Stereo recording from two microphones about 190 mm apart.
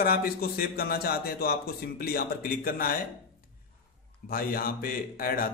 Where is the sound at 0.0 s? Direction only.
50° left (ahead or behind).